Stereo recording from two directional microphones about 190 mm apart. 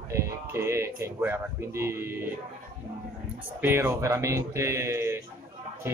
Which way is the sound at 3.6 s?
15° right (ahead or behind).